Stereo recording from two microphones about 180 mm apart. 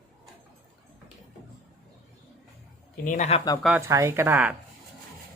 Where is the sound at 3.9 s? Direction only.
15° right (ahead or behind).